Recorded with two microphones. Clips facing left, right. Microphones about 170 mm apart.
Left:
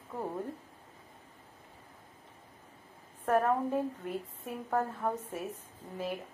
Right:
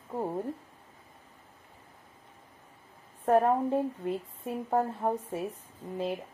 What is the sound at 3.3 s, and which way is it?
Speech, 30° right (ahead or behind).